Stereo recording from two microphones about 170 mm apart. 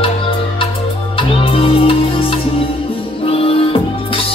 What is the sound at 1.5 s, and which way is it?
Music, 35° left (ahead or behind).